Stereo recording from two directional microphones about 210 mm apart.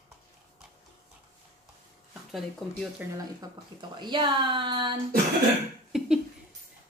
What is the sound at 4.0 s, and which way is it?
Speech, 20° right (ahead or behind).